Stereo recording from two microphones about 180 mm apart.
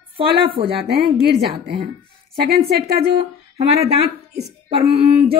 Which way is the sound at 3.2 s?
35° right (ahead or behind).